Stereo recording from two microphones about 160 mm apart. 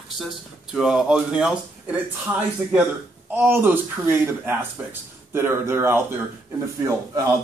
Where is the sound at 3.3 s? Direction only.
10° right (ahead or behind).